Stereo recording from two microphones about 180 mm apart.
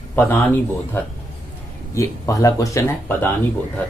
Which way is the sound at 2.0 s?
20° left (ahead or behind).